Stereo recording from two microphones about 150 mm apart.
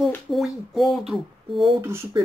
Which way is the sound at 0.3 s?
Centre (ahead or behind).